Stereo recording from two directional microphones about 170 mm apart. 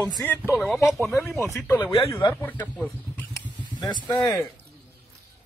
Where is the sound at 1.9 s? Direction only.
35° left (ahead or behind).